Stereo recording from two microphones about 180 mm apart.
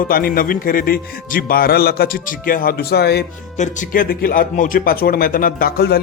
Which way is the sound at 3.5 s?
45° left (ahead or behind).